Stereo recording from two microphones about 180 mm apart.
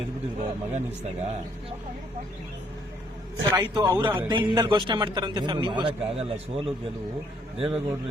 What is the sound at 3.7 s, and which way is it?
A man's voice, 25° right (ahead or behind).